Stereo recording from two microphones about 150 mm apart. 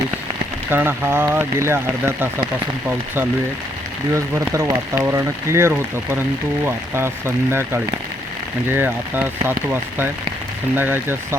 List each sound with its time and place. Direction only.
0.7 s speech: 15° right (ahead or behind)